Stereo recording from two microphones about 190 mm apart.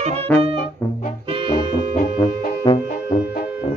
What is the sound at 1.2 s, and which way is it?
Music, 25° right (ahead or behind).